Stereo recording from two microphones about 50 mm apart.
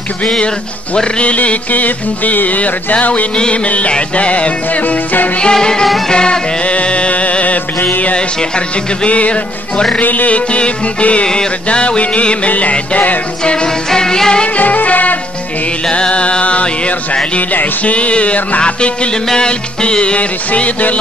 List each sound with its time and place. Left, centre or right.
0.9 s music: centre
5.4 s music: centre; by 8.2 s left
8.4 s music: left
13.4 s music: centre
14.6 s music: left
15.9 s music: left